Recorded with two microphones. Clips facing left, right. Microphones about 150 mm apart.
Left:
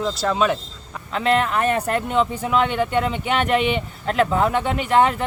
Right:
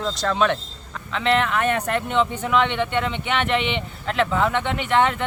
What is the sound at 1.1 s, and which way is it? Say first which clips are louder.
Speech: left 1 dB; 40° left (ahead or behind).